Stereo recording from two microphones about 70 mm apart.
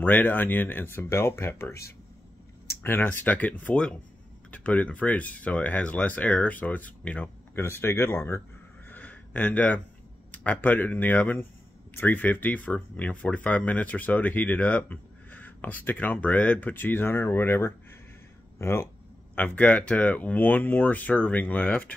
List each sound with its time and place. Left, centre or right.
0.0 s speech: left
7.6 s speech: left
8.8 s a sound: left
10.3 s speech: left
19.3 s speech: left